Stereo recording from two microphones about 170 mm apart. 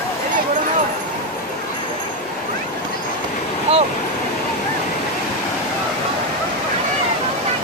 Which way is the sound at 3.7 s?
35° right (ahead or behind).